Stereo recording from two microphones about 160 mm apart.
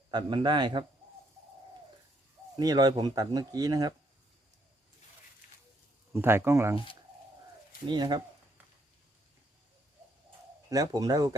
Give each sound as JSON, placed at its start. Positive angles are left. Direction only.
{"t": 0.1, "sound": "speech", "side_deg": -25}
{"t": 2.6, "sound": "speech", "side_deg": -25}
{"t": 6.1, "sound": "speech", "side_deg": -15}
{"t": 7.9, "sound": "speech", "side_deg": -25}
{"t": 10.7, "sound": "speech", "side_deg": -20}